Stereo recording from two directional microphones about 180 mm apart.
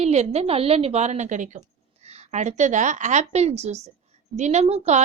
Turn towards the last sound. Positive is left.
turn(degrees=-35)  # may be behind; listen again after turning